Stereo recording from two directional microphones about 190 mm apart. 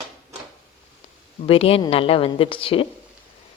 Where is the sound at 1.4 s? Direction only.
30° left (ahead or behind).